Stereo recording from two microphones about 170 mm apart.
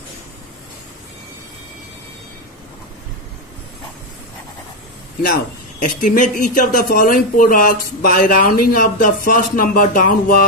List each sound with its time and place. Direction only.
5.3 s speech: 50° left (ahead or behind)